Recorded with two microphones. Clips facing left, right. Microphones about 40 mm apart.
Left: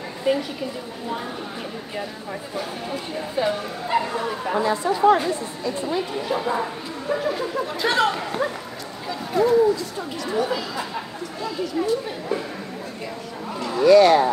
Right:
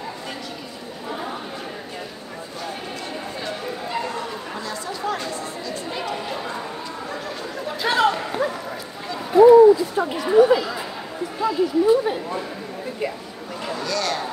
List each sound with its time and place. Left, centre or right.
0.3 s speech: centre
2.9 s speech: centre
6.3 s speech: centre
11.4 s speech: centre
13.7 s speech: centre